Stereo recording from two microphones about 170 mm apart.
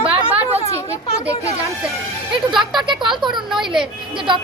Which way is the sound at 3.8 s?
30° right (ahead or behind).